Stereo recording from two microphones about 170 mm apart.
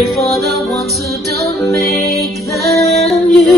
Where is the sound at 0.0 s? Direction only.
Centre (ahead or behind).